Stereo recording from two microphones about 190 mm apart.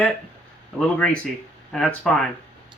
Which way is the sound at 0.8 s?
5° left (ahead or behind).